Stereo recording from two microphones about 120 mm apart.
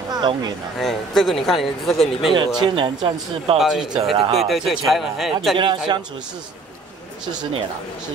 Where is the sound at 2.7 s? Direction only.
45° right (ahead or behind).